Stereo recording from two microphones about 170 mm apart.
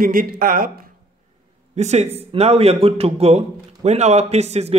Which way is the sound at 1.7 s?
40° right (ahead or behind).